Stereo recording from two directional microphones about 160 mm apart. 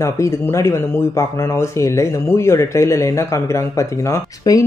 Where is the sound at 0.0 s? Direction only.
20° left (ahead or behind).